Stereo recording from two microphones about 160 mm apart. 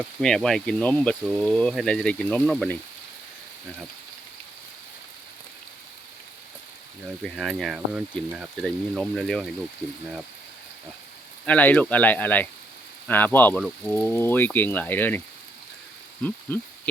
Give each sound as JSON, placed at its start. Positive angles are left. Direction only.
{"t": 0.2, "sound": "speech", "side_deg": 5}
{"t": 7.2, "sound": "speech", "side_deg": 0}
{"t": 11.4, "sound": "speech", "side_deg": 10}
{"t": 16.2, "sound": "a sound", "side_deg": 10}